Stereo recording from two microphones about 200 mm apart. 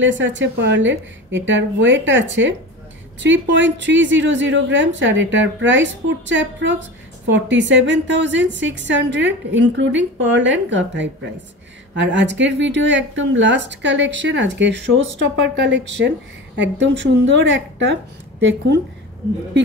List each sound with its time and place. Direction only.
0.0 s a woman's voice: 65° right (ahead or behind)